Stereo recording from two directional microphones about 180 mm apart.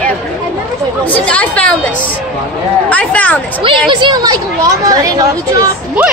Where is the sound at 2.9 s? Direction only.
5° left (ahead or behind).